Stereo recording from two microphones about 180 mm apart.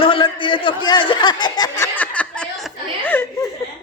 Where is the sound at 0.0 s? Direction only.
30° left (ahead or behind).